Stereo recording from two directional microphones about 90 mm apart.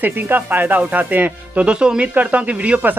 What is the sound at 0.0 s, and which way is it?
Speech, 20° right (ahead or behind).